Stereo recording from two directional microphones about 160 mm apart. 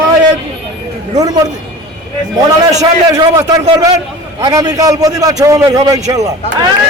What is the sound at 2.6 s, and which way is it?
A man's voice, 25° right (ahead or behind).